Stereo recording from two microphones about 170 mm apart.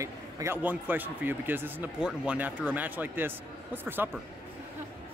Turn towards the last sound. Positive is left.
turn(degrees=-10)  # may be behind; listen again after turning